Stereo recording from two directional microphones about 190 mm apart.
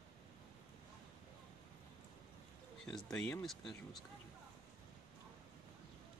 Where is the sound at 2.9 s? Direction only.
5° left (ahead or behind).